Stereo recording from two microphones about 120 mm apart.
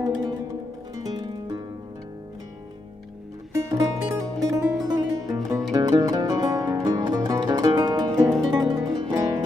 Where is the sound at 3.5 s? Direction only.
25° right (ahead or behind).